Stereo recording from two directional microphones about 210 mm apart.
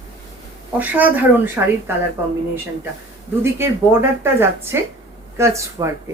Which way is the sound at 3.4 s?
10° right (ahead or behind).